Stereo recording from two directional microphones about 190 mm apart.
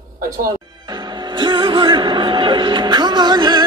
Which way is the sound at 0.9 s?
25° right (ahead or behind).